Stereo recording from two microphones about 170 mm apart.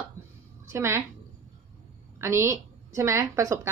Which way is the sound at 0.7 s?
15° right (ahead or behind).